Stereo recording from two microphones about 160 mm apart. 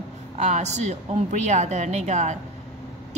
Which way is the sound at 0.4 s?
45° right (ahead or behind).